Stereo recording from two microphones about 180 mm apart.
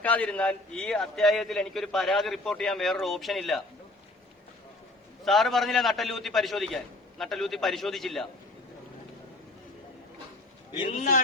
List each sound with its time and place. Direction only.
0.0 s a man's voice: 10° left (ahead or behind)
5.2 s a man's voice: centre (ahead or behind)
10.9 s a man's voice: 45° left (ahead or behind)